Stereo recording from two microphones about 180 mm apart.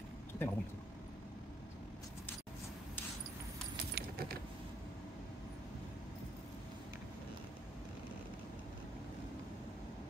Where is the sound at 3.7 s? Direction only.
60° right (ahead or behind).